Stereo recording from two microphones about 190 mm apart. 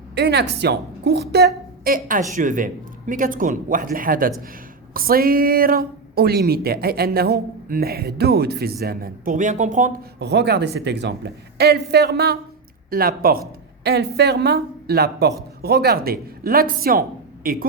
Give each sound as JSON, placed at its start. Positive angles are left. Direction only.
{"t": 0.1, "sound": "a woman's voice", "side_deg": -60}
{"t": 10.2, "sound": "a woman's voice", "side_deg": -60}